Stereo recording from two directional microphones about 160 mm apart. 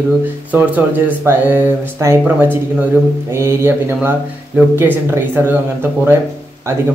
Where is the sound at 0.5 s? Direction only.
10° right (ahead or behind).